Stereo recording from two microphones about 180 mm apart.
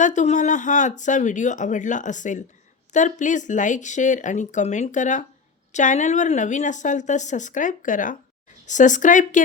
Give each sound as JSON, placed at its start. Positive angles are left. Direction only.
{"t": 0.0, "sound": "speech", "side_deg": 40}